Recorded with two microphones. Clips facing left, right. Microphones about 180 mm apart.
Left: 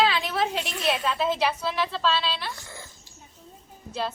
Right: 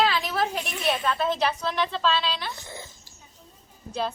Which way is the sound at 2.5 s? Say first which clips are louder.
Right 3 dB; 20° right (ahead or behind).